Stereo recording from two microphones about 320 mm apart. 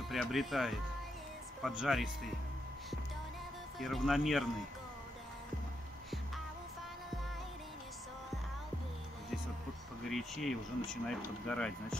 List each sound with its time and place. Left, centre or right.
0.1 s speech: centre
3.8 s speech: centre
10.0 s speech: centre